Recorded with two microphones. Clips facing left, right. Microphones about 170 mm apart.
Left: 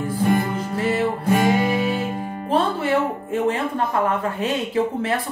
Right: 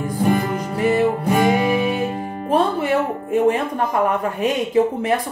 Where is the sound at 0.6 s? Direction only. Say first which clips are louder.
Right 4 dB; 15° right (ahead or behind).